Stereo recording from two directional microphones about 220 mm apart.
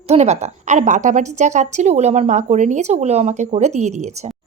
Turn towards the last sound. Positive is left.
turn(degrees=-30)  # may be behind; listen again after turning